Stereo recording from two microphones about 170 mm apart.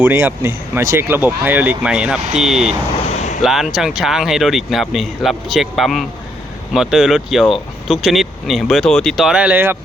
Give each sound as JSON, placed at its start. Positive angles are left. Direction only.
{"t": 0.0, "sound": "speech", "side_deg": -10}
{"t": 3.1, "sound": "a sound", "side_deg": 40}
{"t": 3.4, "sound": "speech", "side_deg": 0}